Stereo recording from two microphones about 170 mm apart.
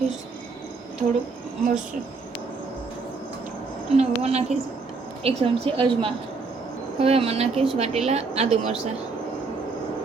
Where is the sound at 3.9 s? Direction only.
40° right (ahead or behind).